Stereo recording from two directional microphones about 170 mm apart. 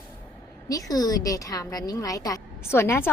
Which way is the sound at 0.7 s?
20° left (ahead or behind).